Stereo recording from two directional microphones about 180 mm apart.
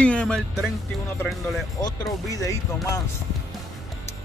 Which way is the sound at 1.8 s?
20° left (ahead or behind).